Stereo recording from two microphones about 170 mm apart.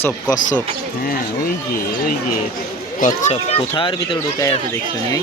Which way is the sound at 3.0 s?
50° left (ahead or behind).